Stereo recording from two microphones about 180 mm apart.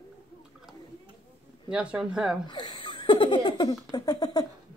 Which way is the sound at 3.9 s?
20° left (ahead or behind).